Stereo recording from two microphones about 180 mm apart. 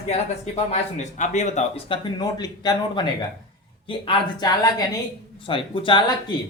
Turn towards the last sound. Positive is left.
turn(degrees=25)  # may be behind; listen again after turning